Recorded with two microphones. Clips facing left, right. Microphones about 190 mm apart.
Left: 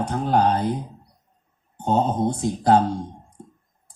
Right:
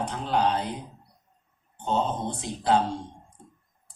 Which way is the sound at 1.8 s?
45° left (ahead or behind).